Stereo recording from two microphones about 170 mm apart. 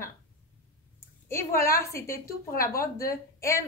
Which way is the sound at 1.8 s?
15° left (ahead or behind).